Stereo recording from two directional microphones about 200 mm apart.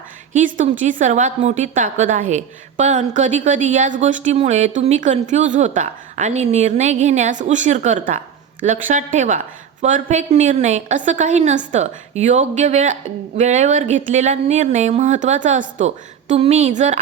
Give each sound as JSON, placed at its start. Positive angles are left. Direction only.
{"t": 0.3, "sound": "a woman's voice", "side_deg": -40}